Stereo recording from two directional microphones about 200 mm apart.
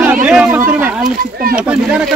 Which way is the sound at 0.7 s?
10° right (ahead or behind).